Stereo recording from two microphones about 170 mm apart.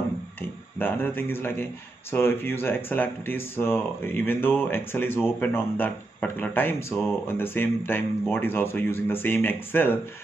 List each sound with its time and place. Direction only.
0.4 s speech: 10° left (ahead or behind)